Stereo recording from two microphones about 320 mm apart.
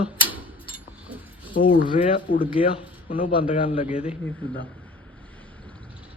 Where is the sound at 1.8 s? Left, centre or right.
Centre.